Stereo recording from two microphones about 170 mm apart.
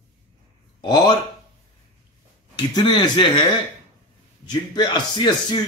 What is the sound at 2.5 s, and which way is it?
Speech, 25° left (ahead or behind).